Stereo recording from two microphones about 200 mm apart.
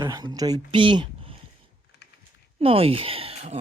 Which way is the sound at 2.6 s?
30° right (ahead or behind).